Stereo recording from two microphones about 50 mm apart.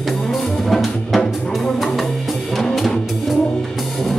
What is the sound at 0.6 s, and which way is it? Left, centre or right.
Music, centre.